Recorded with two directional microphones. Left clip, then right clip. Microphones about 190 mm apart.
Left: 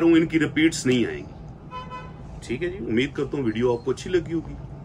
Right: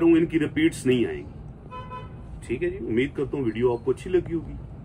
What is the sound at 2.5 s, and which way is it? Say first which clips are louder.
Speech: even; 10° left (ahead or behind).